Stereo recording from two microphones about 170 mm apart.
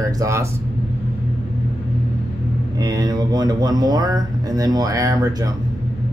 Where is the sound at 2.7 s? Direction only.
25° right (ahead or behind).